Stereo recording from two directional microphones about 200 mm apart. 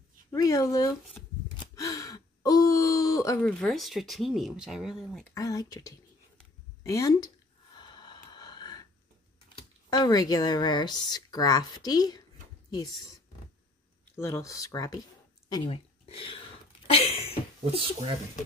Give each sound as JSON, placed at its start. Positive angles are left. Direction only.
{"t": 0.3, "sound": "speech", "side_deg": 15}
{"t": 1.8, "sound": "gasp", "side_deg": 15}
{"t": 3.3, "sound": "speech", "side_deg": 5}
{"t": 5.3, "sound": "speech", "side_deg": 15}
{"t": 7.7, "sound": "gasp", "side_deg": 20}
{"t": 9.8, "sound": "speech", "side_deg": 20}
{"t": 14.1, "sound": "speech", "side_deg": 15}
{"t": 16.8, "sound": "a sound", "side_deg": 30}
{"t": 17.6, "sound": "speech", "side_deg": -25}